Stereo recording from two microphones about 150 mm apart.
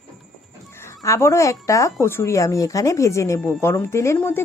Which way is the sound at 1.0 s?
20° left (ahead or behind).